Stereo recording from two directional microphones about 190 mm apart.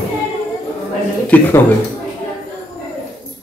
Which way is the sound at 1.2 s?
10° left (ahead or behind).